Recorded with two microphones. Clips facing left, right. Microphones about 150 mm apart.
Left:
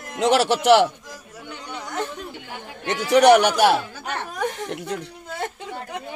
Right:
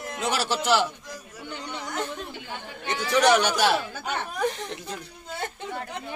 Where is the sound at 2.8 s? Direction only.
70° left (ahead or behind).